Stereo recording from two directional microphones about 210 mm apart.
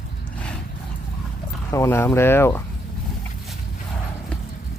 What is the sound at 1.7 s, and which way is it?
Speech, 10° left (ahead or behind).